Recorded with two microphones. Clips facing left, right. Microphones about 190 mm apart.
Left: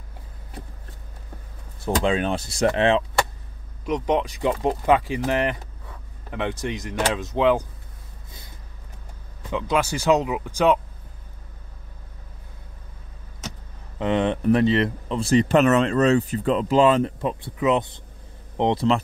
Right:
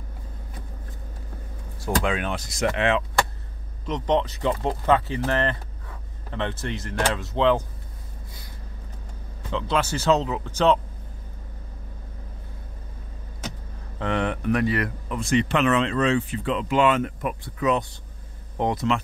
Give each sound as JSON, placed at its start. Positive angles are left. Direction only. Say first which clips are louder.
{"t": 2.0, "sound": "speech", "louder": "left 4 dB", "side_deg": 30}
{"t": 3.8, "sound": "speech", "louder": "left 1 dB", "side_deg": 10}
{"t": 9.5, "sound": "speech", "louder": "left 2 dB", "side_deg": 10}
{"t": 13.9, "sound": "speech", "louder": "left 4 dB", "side_deg": 20}